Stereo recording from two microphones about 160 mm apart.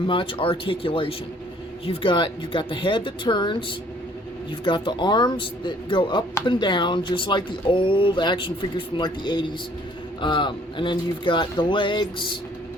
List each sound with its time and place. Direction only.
0.1 s speech: 30° left (ahead or behind)